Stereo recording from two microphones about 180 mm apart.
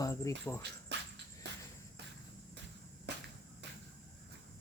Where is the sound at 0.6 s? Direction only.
70° right (ahead or behind).